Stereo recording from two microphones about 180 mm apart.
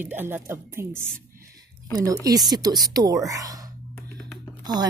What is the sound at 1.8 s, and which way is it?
Speech, 20° right (ahead or behind).